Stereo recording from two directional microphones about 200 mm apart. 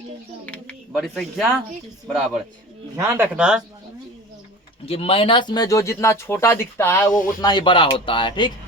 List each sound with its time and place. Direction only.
0.9 s speech: centre (ahead or behind)
2.9 s speech: 15° right (ahead or behind)
4.9 s speech: 30° left (ahead or behind)